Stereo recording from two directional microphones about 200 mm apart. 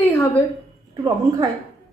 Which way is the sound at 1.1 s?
20° right (ahead or behind).